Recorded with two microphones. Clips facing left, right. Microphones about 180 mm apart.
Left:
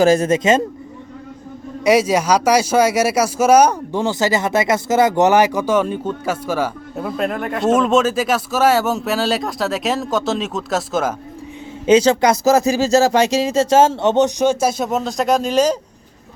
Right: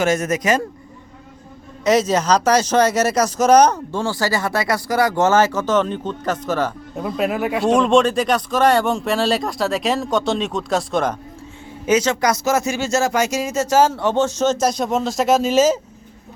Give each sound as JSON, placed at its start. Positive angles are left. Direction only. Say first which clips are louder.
{"t": 0.0, "sound": "speech", "louder": "left 5 dB", "side_deg": 30}
{"t": 1.8, "sound": "speech", "louder": "left 2 dB", "side_deg": 10}
{"t": 11.9, "sound": "speech", "louder": "left 5 dB", "side_deg": 30}